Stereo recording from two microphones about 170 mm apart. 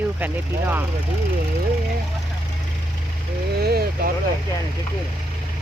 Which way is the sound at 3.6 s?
65° right (ahead or behind).